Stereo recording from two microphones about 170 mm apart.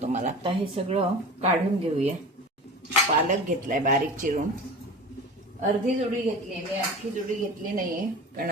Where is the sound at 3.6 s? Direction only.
50° right (ahead or behind).